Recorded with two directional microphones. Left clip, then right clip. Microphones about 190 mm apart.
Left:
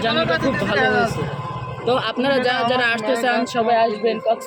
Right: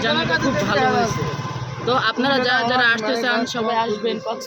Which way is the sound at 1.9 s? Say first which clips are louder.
Even; centre (ahead or behind).